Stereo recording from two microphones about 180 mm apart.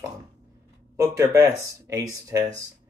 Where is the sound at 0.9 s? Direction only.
20° right (ahead or behind).